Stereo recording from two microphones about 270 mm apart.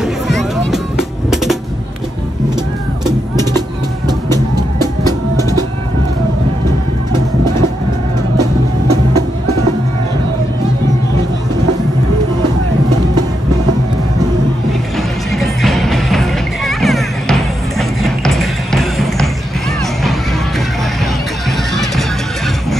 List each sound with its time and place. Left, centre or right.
0.0 s music: centre
4.7 s music: centre
15.3 s music: centre